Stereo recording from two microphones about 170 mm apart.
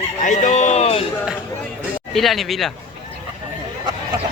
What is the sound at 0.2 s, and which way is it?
Music, 50° left (ahead or behind).